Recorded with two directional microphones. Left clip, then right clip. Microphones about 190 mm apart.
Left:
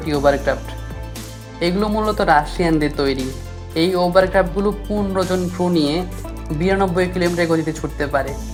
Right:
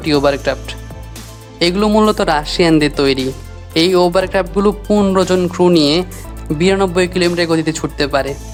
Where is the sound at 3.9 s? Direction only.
30° right (ahead or behind).